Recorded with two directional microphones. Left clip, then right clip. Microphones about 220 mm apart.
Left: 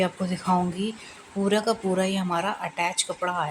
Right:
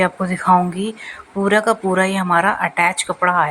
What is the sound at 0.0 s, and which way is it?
A woman's voice, 15° right (ahead or behind).